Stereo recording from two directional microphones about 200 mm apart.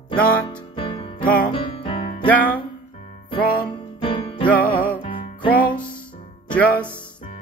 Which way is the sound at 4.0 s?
25° left (ahead or behind).